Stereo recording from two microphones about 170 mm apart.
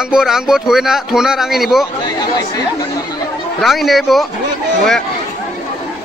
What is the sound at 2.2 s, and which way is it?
Speech, 20° left (ahead or behind).